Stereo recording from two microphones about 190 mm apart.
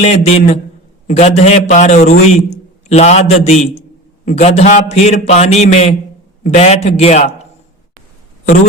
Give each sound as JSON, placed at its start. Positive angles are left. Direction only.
{"t": 0.0, "sound": "a man's voice", "side_deg": 35}